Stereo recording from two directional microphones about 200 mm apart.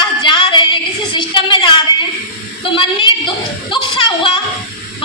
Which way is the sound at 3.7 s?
25° left (ahead or behind).